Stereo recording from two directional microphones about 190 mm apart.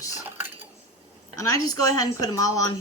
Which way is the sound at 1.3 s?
15° left (ahead or behind).